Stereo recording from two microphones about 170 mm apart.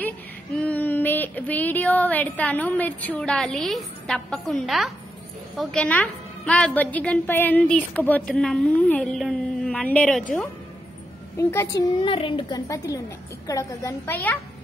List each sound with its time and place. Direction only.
0.6 s a woman's voice: 10° left (ahead or behind)
11.3 s a woman's voice: 15° left (ahead or behind)
12.0 s a woman's voice: 30° left (ahead or behind); by 14.4 s 10° left (ahead or behind)